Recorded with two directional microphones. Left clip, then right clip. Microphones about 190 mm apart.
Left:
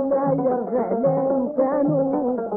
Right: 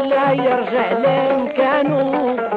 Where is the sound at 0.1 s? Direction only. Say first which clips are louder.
Right 7 dB; 25° right (ahead or behind).